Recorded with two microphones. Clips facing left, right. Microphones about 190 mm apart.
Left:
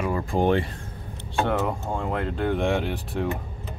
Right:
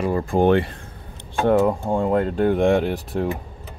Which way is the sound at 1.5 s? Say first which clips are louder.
Right 13 dB; 35° right (ahead or behind).